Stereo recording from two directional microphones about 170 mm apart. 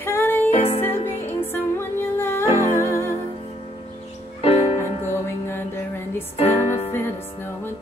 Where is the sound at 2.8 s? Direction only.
15° left (ahead or behind).